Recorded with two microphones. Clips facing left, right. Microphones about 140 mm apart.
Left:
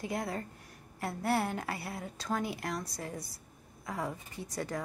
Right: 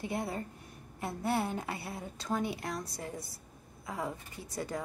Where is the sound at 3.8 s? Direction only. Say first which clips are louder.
Left 1 dB; 25° right (ahead or behind).